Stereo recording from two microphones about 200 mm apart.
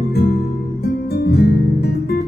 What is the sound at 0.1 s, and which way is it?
Music, 50° left (ahead or behind).